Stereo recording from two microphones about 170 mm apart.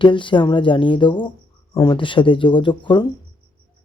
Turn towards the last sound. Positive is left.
turn(degrees=30)  # may be behind; listen again after turning